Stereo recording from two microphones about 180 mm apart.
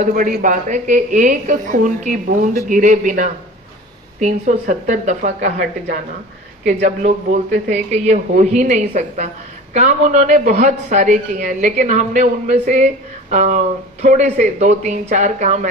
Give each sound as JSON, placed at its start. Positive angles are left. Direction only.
{"t": 0.0, "sound": "a man's voice", "side_deg": -45}